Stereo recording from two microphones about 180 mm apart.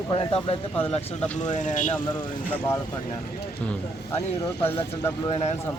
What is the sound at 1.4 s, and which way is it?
Speech, 45° left (ahead or behind).